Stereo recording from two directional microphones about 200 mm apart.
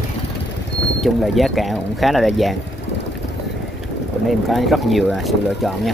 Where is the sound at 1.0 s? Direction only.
Centre (ahead or behind).